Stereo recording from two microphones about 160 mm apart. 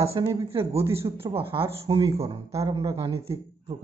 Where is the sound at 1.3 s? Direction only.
35° right (ahead or behind).